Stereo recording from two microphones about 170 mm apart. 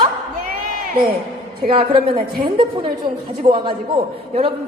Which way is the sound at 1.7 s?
30° right (ahead or behind).